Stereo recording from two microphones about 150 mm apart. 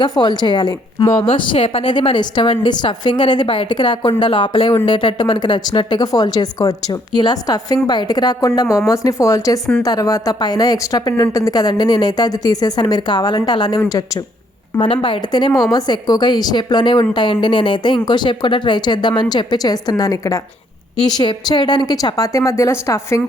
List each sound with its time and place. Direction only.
0.0 s a woman's voice: 30° left (ahead or behind)
15.0 s a woman's voice: 30° left (ahead or behind)